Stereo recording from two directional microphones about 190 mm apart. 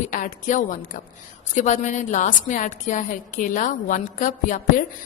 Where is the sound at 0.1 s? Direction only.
45° left (ahead or behind).